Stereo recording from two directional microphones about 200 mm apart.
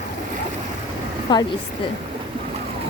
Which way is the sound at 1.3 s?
25° left (ahead or behind).